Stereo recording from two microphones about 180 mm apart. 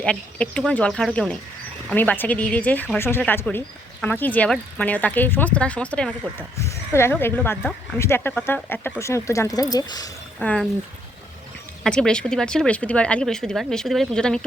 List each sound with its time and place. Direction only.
0.0 s speech: 5° left (ahead or behind); by 10.1 s 20° left (ahead or behind)
10.4 s speech: 5° left (ahead or behind)
11.8 s speech: 5° left (ahead or behind)